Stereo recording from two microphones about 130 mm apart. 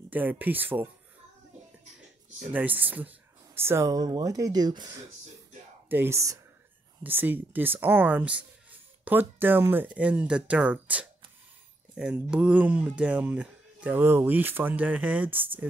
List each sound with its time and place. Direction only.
0.1 s speech: 15° right (ahead or behind)
2.5 s speech: 10° right (ahead or behind); by 5.0 s 30° right (ahead or behind)
5.9 s speech: 20° right (ahead or behind)